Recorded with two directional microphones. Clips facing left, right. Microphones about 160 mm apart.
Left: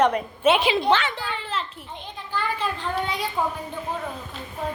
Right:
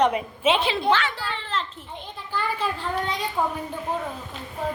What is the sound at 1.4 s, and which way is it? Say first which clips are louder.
Children playing: right 3 dB; 5° left (ahead or behind).